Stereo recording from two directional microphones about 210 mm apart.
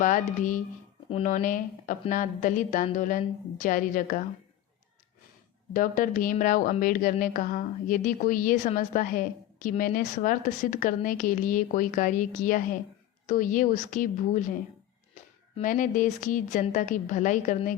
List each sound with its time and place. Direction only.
0.0 s a woman's voice: 40° left (ahead or behind)
5.7 s a woman's voice: 40° left (ahead or behind)
15.5 s a woman's voice: 40° left (ahead or behind)